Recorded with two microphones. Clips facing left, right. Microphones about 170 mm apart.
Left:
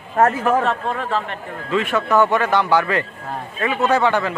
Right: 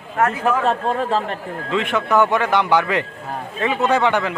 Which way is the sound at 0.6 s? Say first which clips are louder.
Right 3 dB; 35° right (ahead or behind).